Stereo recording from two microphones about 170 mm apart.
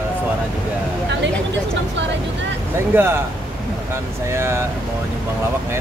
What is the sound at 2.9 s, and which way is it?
Speech, 15° right (ahead or behind).